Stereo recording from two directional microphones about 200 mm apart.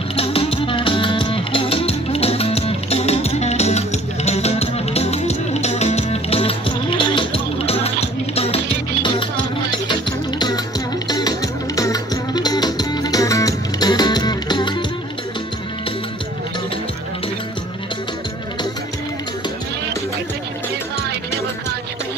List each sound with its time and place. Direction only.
0.1 s music: 30° left (ahead or behind)
9.8 s music: 20° left (ahead or behind)